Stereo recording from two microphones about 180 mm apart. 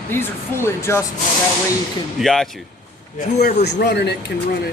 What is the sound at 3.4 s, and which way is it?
Speech, 65° left (ahead or behind).